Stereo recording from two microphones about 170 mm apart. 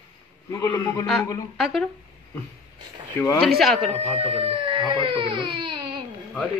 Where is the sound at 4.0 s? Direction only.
35° right (ahead or behind).